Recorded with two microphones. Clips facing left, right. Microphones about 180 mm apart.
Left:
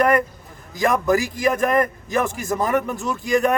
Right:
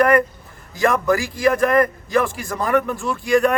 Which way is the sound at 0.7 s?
15° left (ahead or behind).